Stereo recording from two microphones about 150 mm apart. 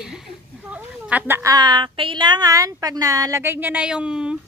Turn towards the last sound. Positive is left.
turn(degrees=-5)  # may be behind; listen again after turning